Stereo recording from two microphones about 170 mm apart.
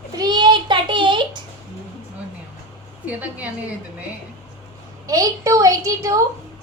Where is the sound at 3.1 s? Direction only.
10° right (ahead or behind).